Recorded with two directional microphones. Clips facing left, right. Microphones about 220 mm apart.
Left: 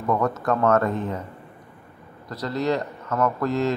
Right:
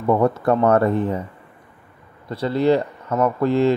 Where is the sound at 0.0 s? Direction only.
30° right (ahead or behind).